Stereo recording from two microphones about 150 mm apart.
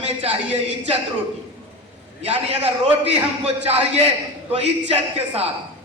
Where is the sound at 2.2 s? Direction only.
40° right (ahead or behind).